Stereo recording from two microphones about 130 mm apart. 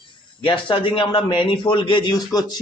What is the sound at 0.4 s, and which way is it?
Speech, 40° left (ahead or behind).